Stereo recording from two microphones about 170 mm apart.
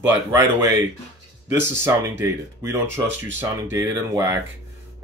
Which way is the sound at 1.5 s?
15° right (ahead or behind).